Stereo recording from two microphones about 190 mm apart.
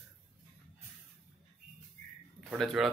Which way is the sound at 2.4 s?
Centre (ahead or behind).